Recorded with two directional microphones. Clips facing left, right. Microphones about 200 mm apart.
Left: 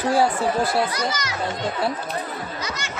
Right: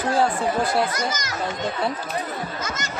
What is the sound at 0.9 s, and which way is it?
Speech, 45° right (ahead or behind).